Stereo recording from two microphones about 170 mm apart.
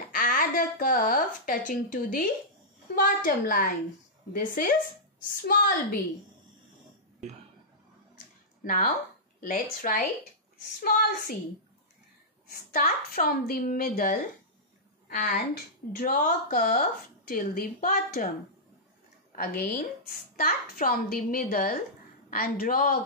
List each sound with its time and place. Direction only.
0.1 s speech: 55° left (ahead or behind)
8.6 s a woman's voice: 50° left (ahead or behind)
12.7 s speech: 60° left (ahead or behind)
19.3 s a woman's voice: 55° left (ahead or behind)